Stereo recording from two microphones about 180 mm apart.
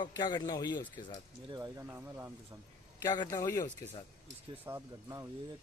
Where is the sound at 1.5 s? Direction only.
25° right (ahead or behind).